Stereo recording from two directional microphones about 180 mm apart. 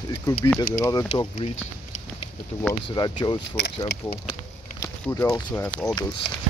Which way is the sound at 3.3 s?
65° left (ahead or behind).